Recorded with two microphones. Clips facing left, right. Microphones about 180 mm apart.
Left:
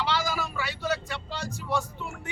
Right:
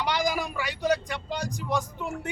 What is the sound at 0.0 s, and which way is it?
Vehicle, 15° right (ahead or behind).